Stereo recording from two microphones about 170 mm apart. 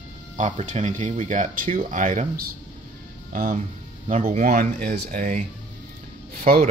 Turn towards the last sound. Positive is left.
turn(degrees=-55)  # may be behind; listen again after turning